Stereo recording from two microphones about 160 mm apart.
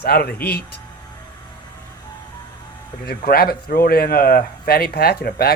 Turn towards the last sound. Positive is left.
turn(degrees=75)  # may be behind; listen again after turning